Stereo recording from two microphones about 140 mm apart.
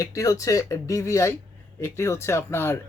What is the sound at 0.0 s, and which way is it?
Speech, 25° left (ahead or behind).